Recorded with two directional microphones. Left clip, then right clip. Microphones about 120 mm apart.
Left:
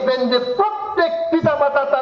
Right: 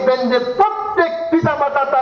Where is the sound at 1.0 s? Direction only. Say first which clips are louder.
Right 1 dB; 35° left (ahead or behind).